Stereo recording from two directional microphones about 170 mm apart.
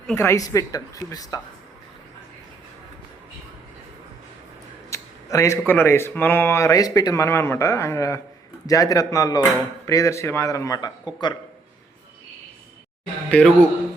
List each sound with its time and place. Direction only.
0.2 s speech: 20° left (ahead or behind)
4.9 s speech: 15° left (ahead or behind)
13.3 s speech: 5° left (ahead or behind)